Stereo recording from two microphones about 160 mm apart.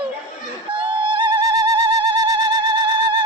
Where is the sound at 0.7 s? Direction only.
30° right (ahead or behind).